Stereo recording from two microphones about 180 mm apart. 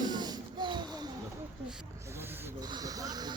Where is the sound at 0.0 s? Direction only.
25° right (ahead or behind).